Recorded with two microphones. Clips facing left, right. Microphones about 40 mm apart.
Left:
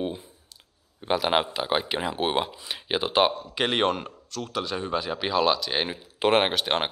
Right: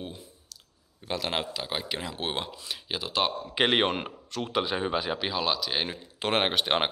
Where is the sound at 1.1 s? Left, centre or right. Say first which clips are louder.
Left 7 dB; centre.